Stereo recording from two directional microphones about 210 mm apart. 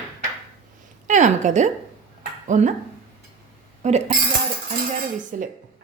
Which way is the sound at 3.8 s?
30° right (ahead or behind).